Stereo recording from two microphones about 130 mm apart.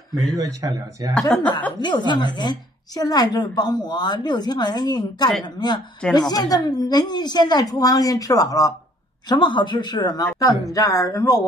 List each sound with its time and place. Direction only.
0.4 s speech: 30° right (ahead or behind)
1.3 s speech: 10° left (ahead or behind)
1.8 s a woman's voice: 35° left (ahead or behind)